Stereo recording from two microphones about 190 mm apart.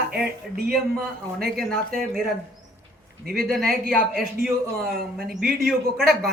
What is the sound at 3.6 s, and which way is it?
Speech, 50° right (ahead or behind).